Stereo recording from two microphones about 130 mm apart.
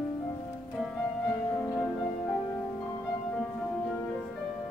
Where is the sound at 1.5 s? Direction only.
15° left (ahead or behind).